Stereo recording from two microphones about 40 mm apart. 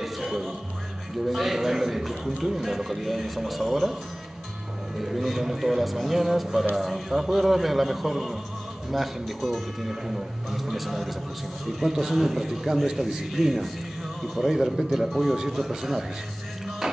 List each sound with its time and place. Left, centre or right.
0.0 s music: centre
1.2 s a man's voice: centre
4.9 s a man's voice: centre
16.8 s music: centre